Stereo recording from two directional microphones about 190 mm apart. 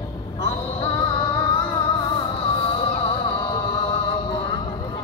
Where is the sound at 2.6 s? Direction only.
30° left (ahead or behind).